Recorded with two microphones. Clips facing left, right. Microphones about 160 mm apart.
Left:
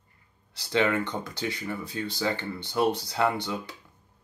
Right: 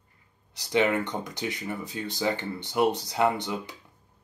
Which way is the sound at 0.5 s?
15° right (ahead or behind).